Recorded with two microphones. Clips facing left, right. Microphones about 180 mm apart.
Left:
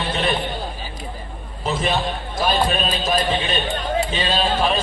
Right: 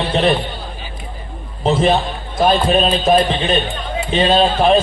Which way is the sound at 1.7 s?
30° right (ahead or behind).